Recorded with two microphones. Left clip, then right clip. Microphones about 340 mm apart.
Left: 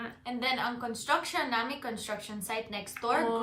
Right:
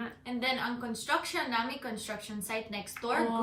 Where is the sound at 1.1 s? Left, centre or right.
Centre.